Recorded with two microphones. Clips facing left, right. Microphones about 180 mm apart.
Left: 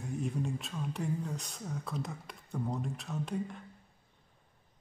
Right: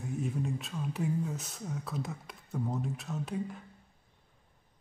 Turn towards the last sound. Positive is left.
turn(degrees=0)  # may be behind; listen again after turning